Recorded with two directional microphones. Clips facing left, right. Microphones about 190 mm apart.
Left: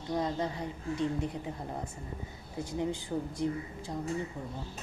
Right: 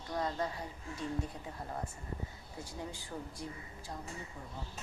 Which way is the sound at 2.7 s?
20° left (ahead or behind).